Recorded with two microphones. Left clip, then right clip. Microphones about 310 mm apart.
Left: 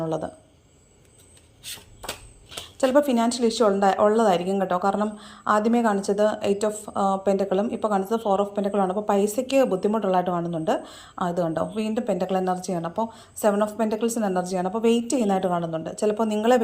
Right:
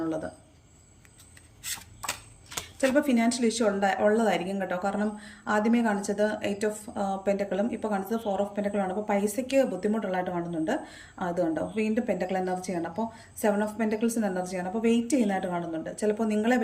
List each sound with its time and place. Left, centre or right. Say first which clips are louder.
2.9 s speech: left 6 dB; centre